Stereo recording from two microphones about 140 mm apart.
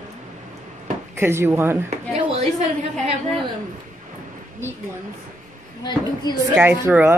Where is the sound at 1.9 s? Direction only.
50° right (ahead or behind).